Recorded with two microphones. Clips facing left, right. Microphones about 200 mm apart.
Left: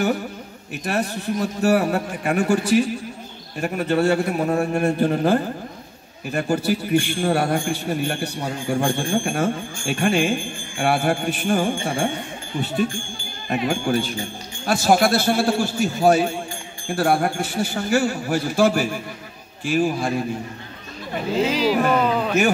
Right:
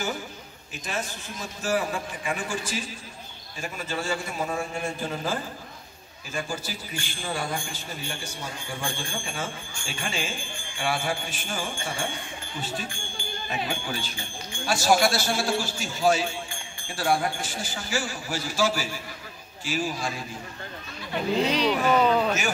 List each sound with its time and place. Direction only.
0.8 s speech: 65° left (ahead or behind)
8.7 s speech: 50° left (ahead or behind)
13.5 s speech: 50° left (ahead or behind)
21.4 s speech: 5° left (ahead or behind)